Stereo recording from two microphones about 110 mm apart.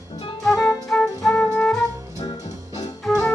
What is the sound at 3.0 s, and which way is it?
Music, 5° left (ahead or behind).